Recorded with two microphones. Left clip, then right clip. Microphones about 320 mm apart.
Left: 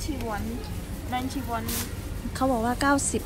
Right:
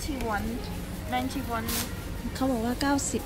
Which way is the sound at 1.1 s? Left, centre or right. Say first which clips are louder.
Even; centre.